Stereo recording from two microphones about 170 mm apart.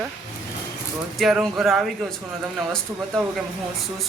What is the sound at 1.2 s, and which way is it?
Speech, centre (ahead or behind).